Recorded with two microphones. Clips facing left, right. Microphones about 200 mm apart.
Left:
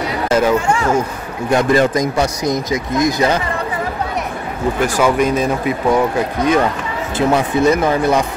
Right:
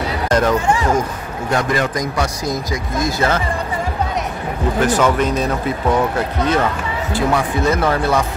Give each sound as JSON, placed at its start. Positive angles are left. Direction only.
{"t": 0.3, "sound": "speech", "side_deg": 10}
{"t": 1.5, "sound": "speech", "side_deg": 20}
{"t": 4.8, "sound": "speech", "side_deg": 10}